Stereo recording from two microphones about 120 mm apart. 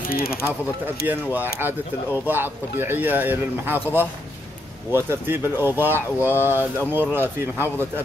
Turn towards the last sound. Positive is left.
turn(degrees=-15)  # may be behind; listen again after turning